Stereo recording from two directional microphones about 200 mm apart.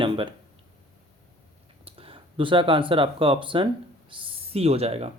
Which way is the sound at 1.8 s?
25° right (ahead or behind).